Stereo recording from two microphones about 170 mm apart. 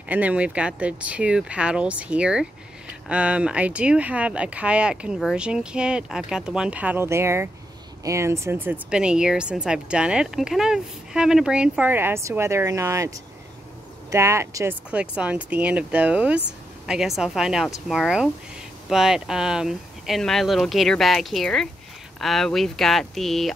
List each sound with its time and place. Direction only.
0.1 s speech: 10° right (ahead or behind)